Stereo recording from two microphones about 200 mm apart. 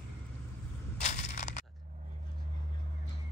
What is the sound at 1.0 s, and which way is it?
Crushing, 35° left (ahead or behind).